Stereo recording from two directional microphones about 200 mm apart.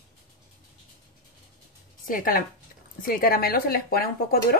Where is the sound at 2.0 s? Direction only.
45° left (ahead or behind).